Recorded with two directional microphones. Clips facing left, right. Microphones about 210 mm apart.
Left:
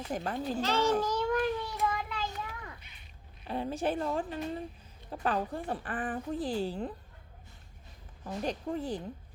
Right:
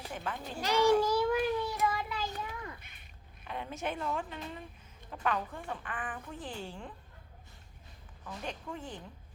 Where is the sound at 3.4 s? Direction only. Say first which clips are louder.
Left 6 dB; 35° left (ahead or behind).